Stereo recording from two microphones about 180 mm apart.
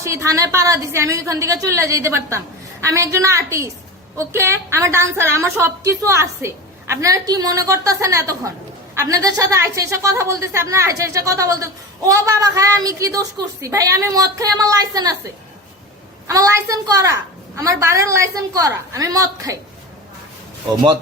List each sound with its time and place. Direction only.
0.0 s a woman's voice: 15° right (ahead or behind)
16.2 s a woman's voice: 20° right (ahead or behind)